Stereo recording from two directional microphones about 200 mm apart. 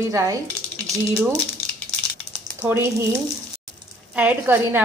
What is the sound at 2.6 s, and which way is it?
Speech, 10° right (ahead or behind).